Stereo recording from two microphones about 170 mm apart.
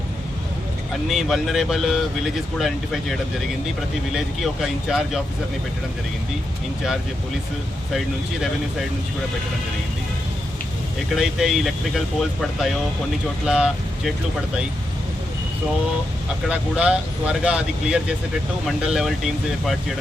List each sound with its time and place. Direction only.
1.0 s speech: centre (ahead or behind)
11.1 s speech: centre (ahead or behind)
16.5 s speech: 5° right (ahead or behind)